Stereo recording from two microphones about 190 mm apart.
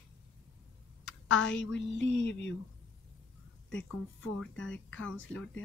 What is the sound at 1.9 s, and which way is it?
Speech, 75° left (ahead or behind).